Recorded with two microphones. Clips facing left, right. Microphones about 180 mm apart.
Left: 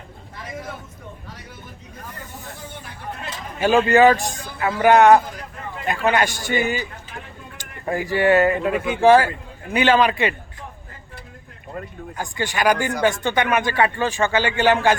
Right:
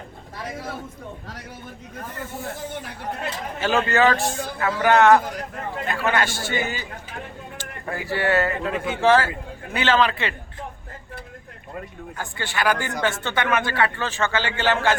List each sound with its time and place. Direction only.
3.6 s speech: 15° left (ahead or behind)
12.1 s speech: 15° left (ahead or behind)